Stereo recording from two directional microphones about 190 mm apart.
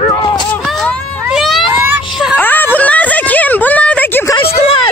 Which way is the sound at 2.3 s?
10° left (ahead or behind).